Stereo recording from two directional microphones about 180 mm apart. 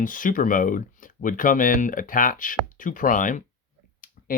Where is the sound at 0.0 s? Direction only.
50° left (ahead or behind).